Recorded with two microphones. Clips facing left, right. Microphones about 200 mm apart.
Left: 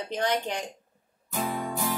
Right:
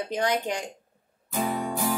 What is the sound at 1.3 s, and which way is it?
Music, 15° right (ahead or behind).